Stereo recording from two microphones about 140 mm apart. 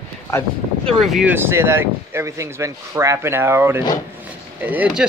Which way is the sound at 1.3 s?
15° right (ahead or behind).